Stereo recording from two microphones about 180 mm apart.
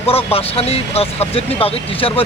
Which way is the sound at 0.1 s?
30° left (ahead or behind).